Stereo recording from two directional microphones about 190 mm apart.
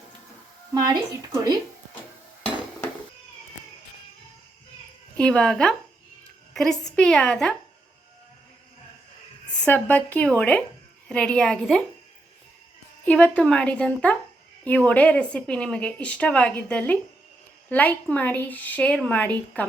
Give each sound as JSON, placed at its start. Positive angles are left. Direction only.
{"t": 0.7, "sound": "a woman's voice", "side_deg": -20}
{"t": 5.1, "sound": "a woman's voice", "side_deg": 5}
{"t": 9.6, "sound": "a woman's voice", "side_deg": 10}
{"t": 13.1, "sound": "a woman's voice", "side_deg": 10}